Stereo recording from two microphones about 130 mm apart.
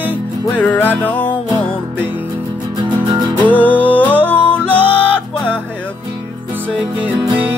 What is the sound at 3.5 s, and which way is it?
Mantra, 10° left (ahead or behind).